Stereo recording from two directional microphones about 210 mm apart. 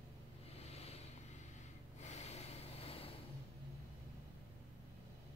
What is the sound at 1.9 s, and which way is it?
Snort, 30° left (ahead or behind).